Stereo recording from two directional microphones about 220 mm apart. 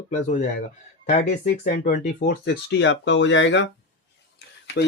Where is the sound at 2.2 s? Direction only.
45° left (ahead or behind).